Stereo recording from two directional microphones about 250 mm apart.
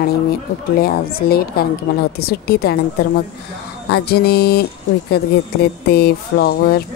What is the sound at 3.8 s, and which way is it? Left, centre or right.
Speech, left.